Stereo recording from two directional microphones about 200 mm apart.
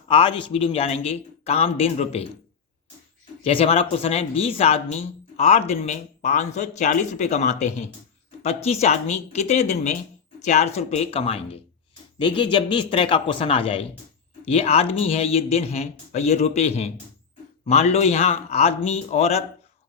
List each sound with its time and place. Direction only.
0.1 s a man's voice: 25° left (ahead or behind)
3.4 s a man's voice: 30° left (ahead or behind)